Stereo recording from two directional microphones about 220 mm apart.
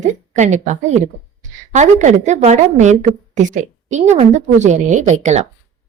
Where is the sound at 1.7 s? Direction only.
35° right (ahead or behind).